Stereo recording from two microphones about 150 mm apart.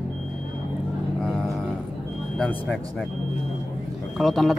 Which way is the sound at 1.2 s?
Centre (ahead or behind).